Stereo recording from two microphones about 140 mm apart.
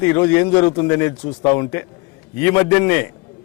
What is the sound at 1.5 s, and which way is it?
A man's voice, 20° left (ahead or behind).